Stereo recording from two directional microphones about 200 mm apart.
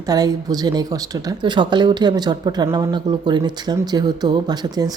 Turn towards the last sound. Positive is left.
turn(degrees=-20)  # may be behind; listen again after turning